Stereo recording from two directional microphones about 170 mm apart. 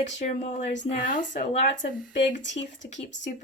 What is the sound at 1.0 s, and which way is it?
Speech, 50° left (ahead or behind).